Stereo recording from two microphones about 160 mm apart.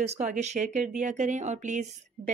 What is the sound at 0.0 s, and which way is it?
Speech, 45° right (ahead or behind).